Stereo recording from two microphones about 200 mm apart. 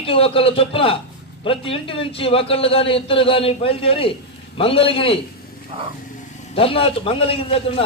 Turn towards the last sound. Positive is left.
turn(degrees=30)  # may be behind; listen again after turning